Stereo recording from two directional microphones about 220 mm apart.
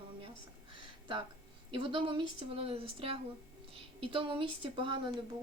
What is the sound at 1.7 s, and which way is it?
Speech, 20° right (ahead or behind).